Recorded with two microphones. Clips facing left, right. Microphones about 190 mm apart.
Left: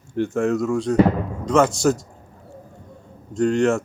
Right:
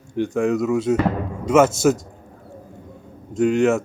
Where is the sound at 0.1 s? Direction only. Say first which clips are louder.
Right 1 dB; 5° left (ahead or behind).